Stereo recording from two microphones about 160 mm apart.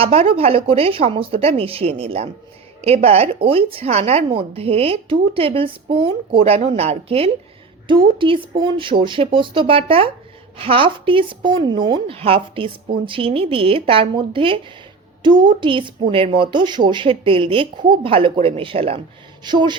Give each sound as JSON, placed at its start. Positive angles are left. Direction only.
{"t": 0.0, "sound": "a woman's voice", "side_deg": -40}